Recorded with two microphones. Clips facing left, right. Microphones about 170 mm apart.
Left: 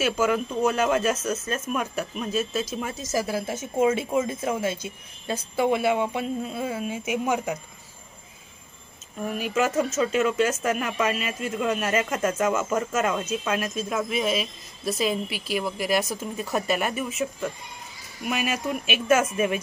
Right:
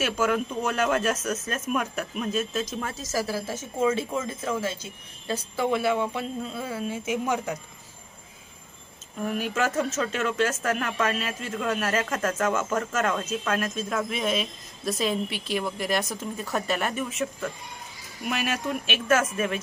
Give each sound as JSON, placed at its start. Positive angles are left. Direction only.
{"t": 0.0, "sound": "speech", "side_deg": 5}
{"t": 9.2, "sound": "speech", "side_deg": 5}